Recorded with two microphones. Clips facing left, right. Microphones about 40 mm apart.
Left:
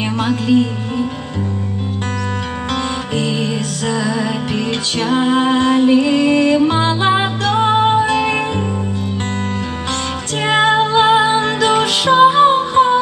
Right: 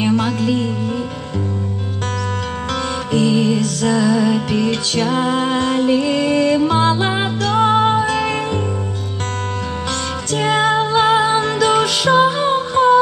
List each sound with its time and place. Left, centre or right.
0.0 s music: left
2.7 s music: left
10.3 s music: left